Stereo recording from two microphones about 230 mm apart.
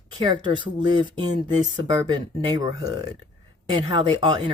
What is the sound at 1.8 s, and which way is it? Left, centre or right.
Speech, centre.